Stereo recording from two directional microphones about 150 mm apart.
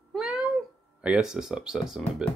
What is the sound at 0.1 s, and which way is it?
Cat, 5° right (ahead or behind).